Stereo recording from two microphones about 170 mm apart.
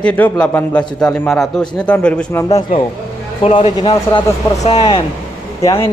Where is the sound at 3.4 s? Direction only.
30° left (ahead or behind).